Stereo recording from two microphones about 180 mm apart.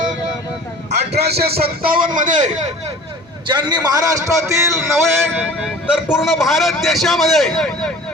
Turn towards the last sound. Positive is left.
turn(degrees=0)  # may be behind; listen again after turning